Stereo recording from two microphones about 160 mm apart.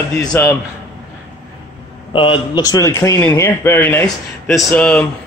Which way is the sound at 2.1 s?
30° left (ahead or behind).